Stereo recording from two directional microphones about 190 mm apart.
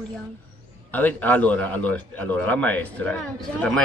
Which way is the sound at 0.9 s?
10° left (ahead or behind).